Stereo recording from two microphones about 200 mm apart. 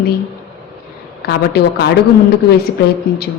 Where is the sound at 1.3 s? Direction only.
55° left (ahead or behind).